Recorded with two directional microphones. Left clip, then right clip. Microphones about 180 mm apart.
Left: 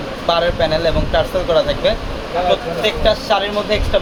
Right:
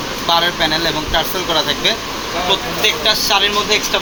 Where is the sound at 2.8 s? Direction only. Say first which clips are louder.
Right 1 dB; 55° left (ahead or behind).